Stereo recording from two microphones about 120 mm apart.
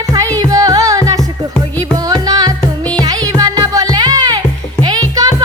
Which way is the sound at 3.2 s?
30° right (ahead or behind).